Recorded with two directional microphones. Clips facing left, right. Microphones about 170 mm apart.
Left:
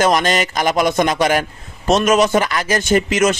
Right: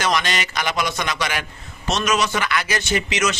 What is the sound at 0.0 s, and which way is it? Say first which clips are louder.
Speech: left 7 dB; 45° left (ahead or behind).